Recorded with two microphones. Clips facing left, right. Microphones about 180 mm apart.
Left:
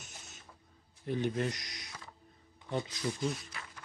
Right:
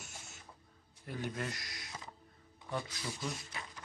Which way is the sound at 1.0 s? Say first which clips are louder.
Left 7 dB; 20° left (ahead or behind).